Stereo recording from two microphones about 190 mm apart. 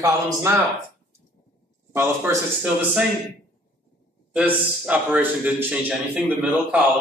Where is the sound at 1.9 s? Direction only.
15° right (ahead or behind).